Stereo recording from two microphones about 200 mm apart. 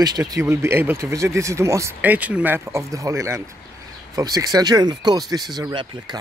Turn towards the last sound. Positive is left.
turn(degrees=-20)  # may be behind; listen again after turning